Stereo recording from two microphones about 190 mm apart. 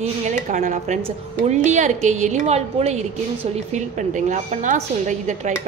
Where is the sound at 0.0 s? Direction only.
40° right (ahead or behind).